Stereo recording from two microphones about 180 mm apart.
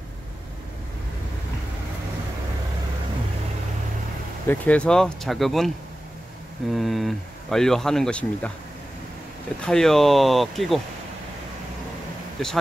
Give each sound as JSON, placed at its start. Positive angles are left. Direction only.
{"t": 4.5, "sound": "speech", "side_deg": 5}
{"t": 6.7, "sound": "speech", "side_deg": 0}
{"t": 9.6, "sound": "speech", "side_deg": 5}
{"t": 12.4, "sound": "speech", "side_deg": 5}